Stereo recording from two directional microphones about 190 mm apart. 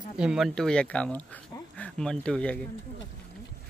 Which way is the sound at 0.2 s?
Centre (ahead or behind).